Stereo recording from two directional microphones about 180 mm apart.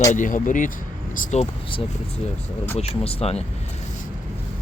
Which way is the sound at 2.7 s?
35° left (ahead or behind).